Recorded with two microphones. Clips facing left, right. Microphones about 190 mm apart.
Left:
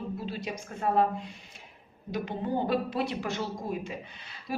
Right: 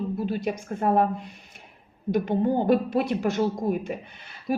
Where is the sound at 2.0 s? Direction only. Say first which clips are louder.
Right 9 dB; 50° right (ahead or behind).